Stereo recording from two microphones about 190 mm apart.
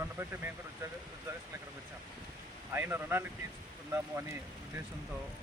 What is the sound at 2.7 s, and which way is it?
Speech, 10° right (ahead or behind).